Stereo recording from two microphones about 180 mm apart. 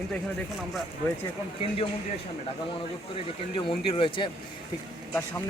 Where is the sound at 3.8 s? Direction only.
30° left (ahead or behind).